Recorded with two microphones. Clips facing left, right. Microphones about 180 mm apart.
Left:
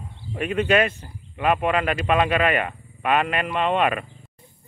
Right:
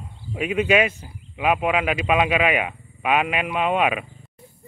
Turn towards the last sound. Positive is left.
turn(degrees=-5)  # may be behind; listen again after turning